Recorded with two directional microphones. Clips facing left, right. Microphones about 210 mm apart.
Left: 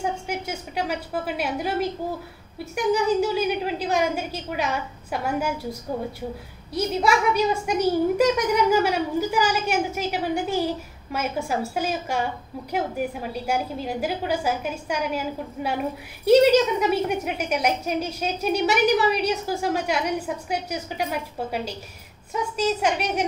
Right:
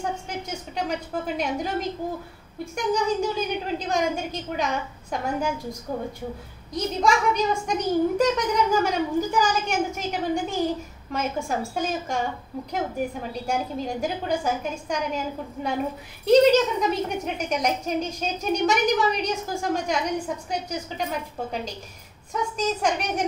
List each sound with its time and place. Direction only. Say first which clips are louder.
0.0 s a woman's voice: left 3 dB; 10° left (ahead or behind)
17.2 s a woman's voice: left 1 dB; 10° left (ahead or behind)